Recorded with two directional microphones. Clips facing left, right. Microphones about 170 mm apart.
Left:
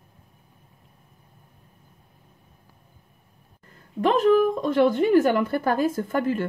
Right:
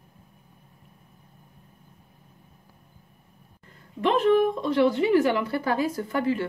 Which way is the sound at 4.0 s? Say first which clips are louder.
Left 2 dB; 40° left (ahead or behind).